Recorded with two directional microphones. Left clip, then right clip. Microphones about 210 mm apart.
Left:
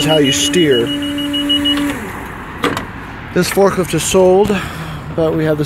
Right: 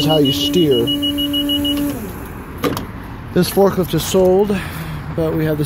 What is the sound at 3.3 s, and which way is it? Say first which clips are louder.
Speech: left 2 dB; centre (ahead or behind).